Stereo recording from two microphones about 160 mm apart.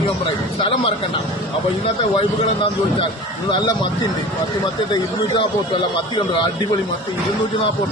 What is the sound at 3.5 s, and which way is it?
Speech, 30° left (ahead or behind).